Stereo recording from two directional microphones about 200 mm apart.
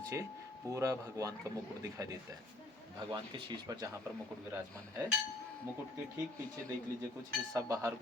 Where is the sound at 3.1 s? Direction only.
20° right (ahead or behind).